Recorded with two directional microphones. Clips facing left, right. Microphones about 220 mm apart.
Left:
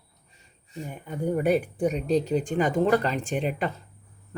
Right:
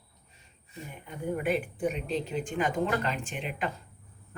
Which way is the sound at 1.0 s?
40° left (ahead or behind).